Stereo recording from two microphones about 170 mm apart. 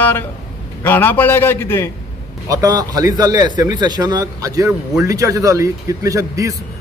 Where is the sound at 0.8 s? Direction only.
10° left (ahead or behind).